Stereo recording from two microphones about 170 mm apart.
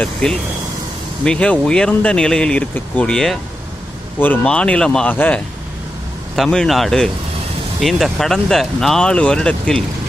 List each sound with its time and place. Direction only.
0.0 s speech: 5° left (ahead or behind)